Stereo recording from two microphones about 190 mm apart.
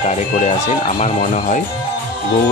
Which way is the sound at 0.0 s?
35° left (ahead or behind).